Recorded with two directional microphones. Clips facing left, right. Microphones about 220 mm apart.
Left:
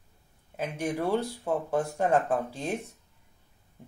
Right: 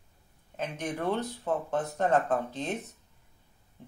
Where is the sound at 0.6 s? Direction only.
10° left (ahead or behind).